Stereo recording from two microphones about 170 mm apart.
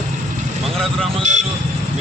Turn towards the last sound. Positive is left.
turn(degrees=-45)  # may be behind; listen again after turning